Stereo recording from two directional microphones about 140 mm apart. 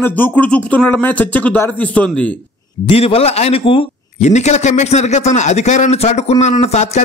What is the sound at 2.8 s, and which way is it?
A man's voice, 45° left (ahead or behind).